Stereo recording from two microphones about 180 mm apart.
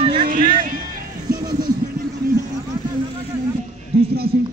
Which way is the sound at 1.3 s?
25° right (ahead or behind).